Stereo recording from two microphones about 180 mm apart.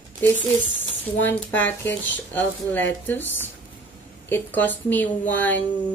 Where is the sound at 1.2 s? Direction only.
10° left (ahead or behind).